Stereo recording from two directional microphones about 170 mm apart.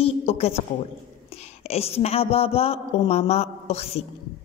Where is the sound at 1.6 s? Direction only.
35° left (ahead or behind).